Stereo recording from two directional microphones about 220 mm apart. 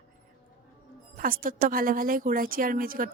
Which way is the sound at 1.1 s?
40° right (ahead or behind).